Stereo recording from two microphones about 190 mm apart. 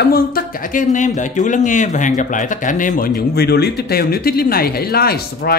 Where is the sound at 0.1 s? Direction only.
50° left (ahead or behind).